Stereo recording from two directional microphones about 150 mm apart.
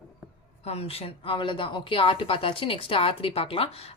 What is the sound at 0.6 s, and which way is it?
A woman's voice, 45° left (ahead or behind).